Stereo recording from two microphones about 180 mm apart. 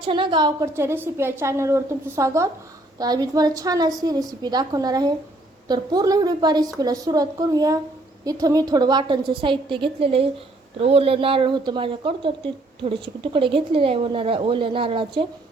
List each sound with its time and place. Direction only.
0.0 s speech: 25° right (ahead or behind)
0.7 s a woman's voice: 15° right (ahead or behind)